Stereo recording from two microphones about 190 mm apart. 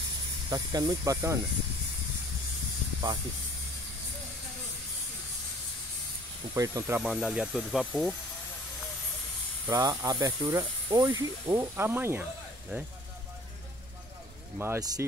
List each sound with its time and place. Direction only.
0.5 s speech: 20° right (ahead or behind)
6.5 s speech: 15° right (ahead or behind)
7.0 s speech: 5° right (ahead or behind)
9.7 s speech: 20° right (ahead or behind)
14.6 s speech: 15° right (ahead or behind)